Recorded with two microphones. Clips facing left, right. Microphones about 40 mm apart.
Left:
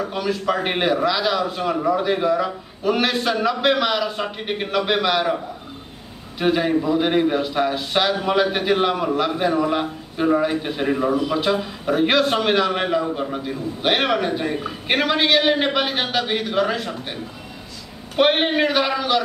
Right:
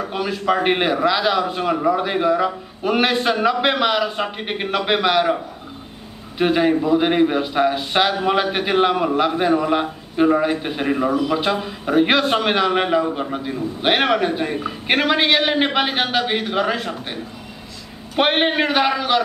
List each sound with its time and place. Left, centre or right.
0.0 s a man's voice: centre
18.1 s a man's voice: centre